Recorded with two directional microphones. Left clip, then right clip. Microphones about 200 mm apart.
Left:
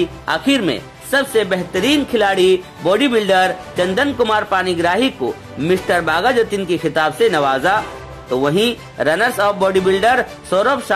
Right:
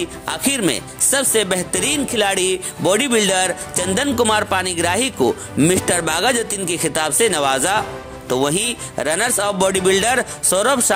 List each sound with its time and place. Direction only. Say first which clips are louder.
0.2 s speech: left 2 dB; 35° right (ahead or behind)